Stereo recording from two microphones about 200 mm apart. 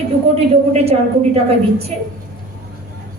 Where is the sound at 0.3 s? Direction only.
30° right (ahead or behind).